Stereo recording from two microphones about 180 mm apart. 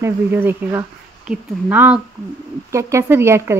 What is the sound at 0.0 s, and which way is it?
Speech, 10° right (ahead or behind).